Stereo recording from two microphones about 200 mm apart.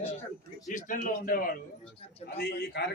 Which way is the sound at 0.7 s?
40° left (ahead or behind).